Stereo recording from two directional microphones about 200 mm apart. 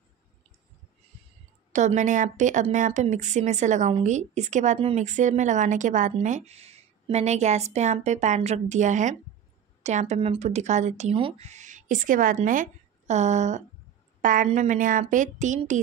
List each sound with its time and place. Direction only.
1.7 s a woman's voice: 35° right (ahead or behind)